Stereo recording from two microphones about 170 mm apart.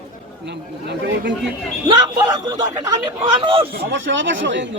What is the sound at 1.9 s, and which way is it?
A man's voice, 25° right (ahead or behind).